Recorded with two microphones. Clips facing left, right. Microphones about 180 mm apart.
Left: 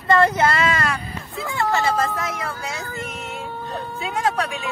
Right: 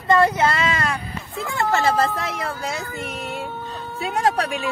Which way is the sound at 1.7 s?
35° right (ahead or behind).